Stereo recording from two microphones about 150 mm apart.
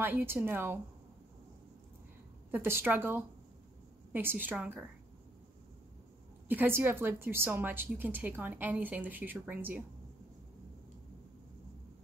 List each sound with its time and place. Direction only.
0.0 s a woman's voice: 15° right (ahead or behind)
2.5 s a woman's voice: 15° right (ahead or behind)
6.5 s a woman's voice: 15° right (ahead or behind)